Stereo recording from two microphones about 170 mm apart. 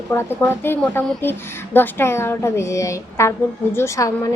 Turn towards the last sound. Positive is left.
turn(degrees=20)  # may be behind; listen again after turning